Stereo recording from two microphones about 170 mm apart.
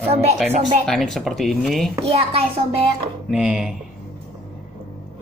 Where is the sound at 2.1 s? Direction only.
35° right (ahead or behind).